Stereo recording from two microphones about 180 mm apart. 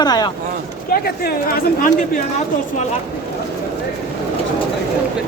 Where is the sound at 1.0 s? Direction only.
55° left (ahead or behind).